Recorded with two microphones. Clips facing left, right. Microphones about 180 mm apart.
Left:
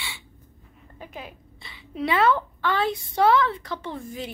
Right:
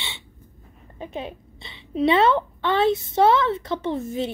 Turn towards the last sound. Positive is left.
turn(degrees=-25)  # may be behind; listen again after turning